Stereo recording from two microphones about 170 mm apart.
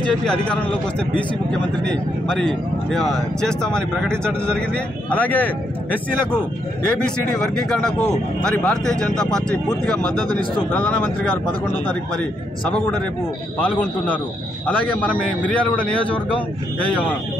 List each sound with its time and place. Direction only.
0.0 s a man's voice: 5° left (ahead or behind)
7.4 s a man's voice: 5° left (ahead or behind)
12.6 s a man's voice: 5° left (ahead or behind)